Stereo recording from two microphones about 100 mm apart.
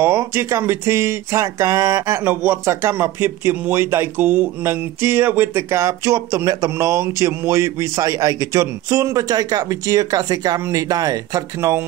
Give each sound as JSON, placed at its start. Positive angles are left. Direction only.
{"t": 0.0, "sound": "speech", "side_deg": -25}